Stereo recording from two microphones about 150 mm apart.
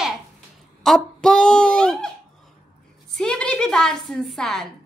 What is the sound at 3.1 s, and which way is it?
A woman's voice, 5° left (ahead or behind).